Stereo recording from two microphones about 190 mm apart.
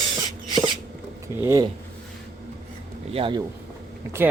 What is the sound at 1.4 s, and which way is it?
Speech, 15° right (ahead or behind).